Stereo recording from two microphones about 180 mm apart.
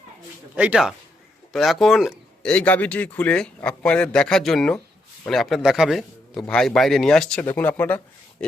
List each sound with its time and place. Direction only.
0.5 s a man's voice: 5° right (ahead or behind); by 8.4 s 10° left (ahead or behind)